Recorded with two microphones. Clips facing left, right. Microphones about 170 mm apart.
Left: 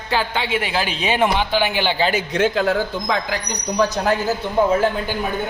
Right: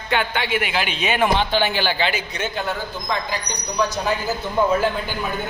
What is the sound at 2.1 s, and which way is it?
A woman's voice, 90° left.